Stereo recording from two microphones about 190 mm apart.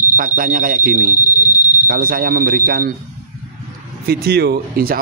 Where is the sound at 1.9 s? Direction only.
50° right (ahead or behind).